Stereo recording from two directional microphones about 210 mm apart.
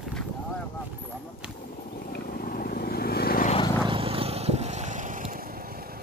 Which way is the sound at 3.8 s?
25° right (ahead or behind).